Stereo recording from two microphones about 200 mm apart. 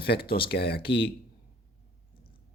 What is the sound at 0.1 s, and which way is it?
Speech, 55° left (ahead or behind).